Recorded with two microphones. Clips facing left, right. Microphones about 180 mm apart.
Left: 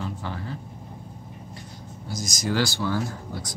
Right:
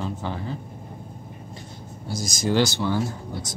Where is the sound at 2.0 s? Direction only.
30° right (ahead or behind).